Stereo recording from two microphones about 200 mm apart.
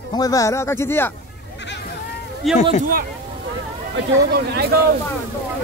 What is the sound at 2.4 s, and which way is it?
Speech, centre (ahead or behind).